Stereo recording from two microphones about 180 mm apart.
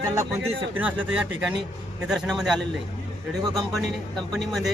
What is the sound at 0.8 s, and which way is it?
Speech, 5° right (ahead or behind).